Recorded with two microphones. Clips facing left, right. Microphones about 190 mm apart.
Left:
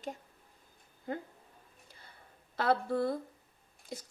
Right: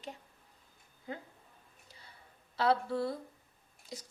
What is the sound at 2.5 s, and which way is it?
Speech, 50° left (ahead or behind).